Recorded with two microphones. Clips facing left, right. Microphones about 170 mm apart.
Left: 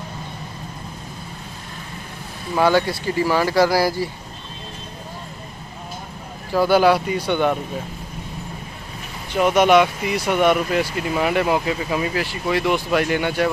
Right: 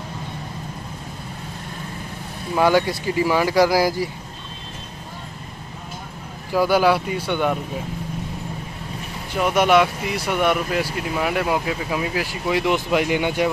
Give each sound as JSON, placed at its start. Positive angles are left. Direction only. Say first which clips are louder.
{"t": 2.5, "sound": "speech", "louder": "even", "side_deg": -15}
{"t": 6.5, "sound": "speech", "louder": "left 2 dB", "side_deg": -10}
{"t": 9.3, "sound": "speech", "louder": "left 2 dB", "side_deg": -5}